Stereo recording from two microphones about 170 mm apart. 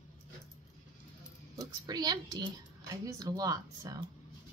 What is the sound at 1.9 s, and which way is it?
Speech, 25° right (ahead or behind).